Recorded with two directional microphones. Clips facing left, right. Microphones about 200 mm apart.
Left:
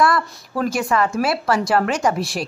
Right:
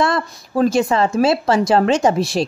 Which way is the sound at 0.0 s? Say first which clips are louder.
Even; 25° right (ahead or behind).